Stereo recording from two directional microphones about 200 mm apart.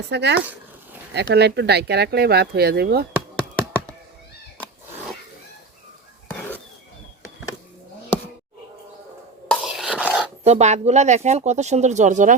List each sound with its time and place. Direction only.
0.1 s speech: 60° right (ahead or behind)
3.3 s tap: 5° left (ahead or behind)
9.5 s a sound: centre (ahead or behind)
10.4 s speech: 35° right (ahead or behind)